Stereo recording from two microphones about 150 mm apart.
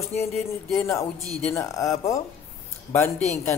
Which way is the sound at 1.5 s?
20° left (ahead or behind).